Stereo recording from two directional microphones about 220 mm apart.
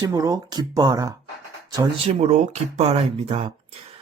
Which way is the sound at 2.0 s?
30° right (ahead or behind).